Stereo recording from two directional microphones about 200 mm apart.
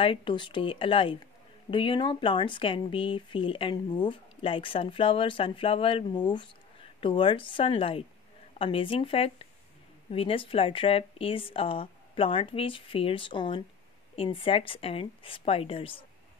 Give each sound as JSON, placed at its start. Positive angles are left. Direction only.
{"t": 0.0, "sound": "speech", "side_deg": 25}